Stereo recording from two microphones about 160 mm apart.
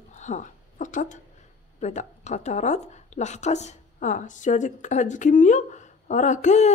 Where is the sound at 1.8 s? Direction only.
45° left (ahead or behind).